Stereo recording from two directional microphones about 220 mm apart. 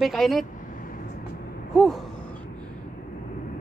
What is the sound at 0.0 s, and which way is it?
Speech, centre (ahead or behind).